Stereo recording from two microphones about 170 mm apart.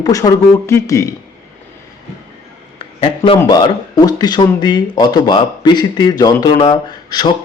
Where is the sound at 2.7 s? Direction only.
35° left (ahead or behind).